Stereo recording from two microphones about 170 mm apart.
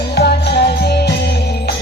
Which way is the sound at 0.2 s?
70° left (ahead or behind).